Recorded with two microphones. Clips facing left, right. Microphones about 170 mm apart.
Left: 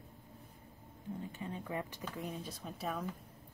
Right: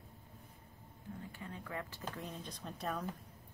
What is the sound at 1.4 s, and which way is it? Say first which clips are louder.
Speech: left 3 dB; 20° left (ahead or behind).